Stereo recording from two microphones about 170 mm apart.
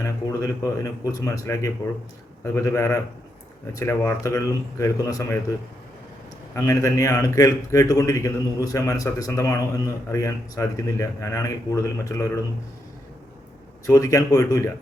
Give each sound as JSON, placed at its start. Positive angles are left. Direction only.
{"t": 0.0, "sound": "a man's voice", "side_deg": 15}
{"t": 6.5, "sound": "a man's voice", "side_deg": 15}
{"t": 13.8, "sound": "a man's voice", "side_deg": 20}